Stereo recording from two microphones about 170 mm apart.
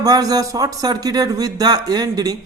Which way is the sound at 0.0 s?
20° right (ahead or behind).